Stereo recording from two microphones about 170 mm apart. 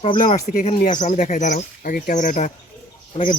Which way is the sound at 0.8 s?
50° left (ahead or behind).